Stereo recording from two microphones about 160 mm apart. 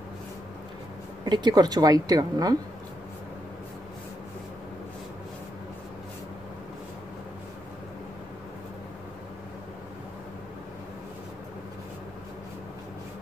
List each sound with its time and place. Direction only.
1.2 s a woman's voice: 25° right (ahead or behind)